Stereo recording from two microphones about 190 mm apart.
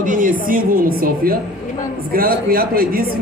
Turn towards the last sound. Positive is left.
turn(degrees=-50)  # may be behind; listen again after turning